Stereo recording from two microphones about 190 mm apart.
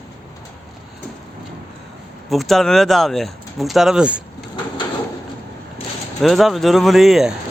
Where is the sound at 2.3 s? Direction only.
Centre (ahead or behind).